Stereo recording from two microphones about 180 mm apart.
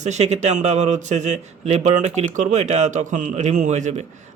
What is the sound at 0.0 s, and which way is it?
A man's voice, 40° right (ahead or behind).